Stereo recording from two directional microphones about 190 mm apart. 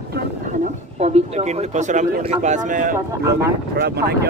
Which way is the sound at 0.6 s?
35° right (ahead or behind).